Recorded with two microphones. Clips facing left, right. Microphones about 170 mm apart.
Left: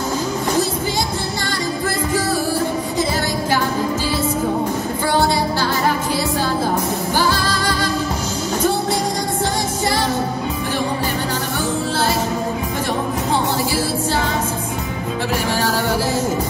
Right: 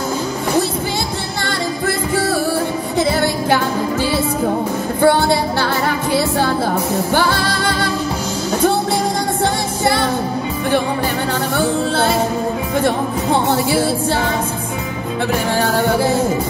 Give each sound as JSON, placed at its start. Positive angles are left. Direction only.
{"t": 3.0, "sound": "music", "side_deg": -55}
{"t": 5.0, "sound": "music", "side_deg": -55}
{"t": 7.2, "sound": "music", "side_deg": -60}
{"t": 11.5, "sound": "music", "side_deg": -55}
{"t": 15.6, "sound": "music", "side_deg": -60}